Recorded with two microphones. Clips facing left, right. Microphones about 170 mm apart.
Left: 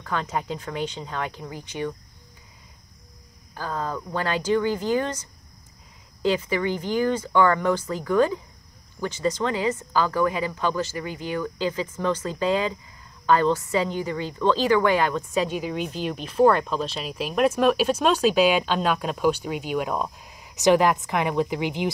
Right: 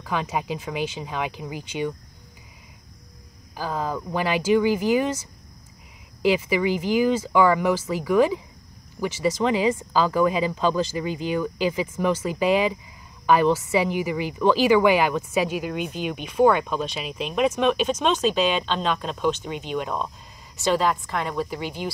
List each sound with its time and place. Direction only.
0.0 s speech: 15° right (ahead or behind)
3.5 s speech: 10° right (ahead or behind)
6.2 s a woman's voice: 10° right (ahead or behind); by 21.9 s 15° left (ahead or behind)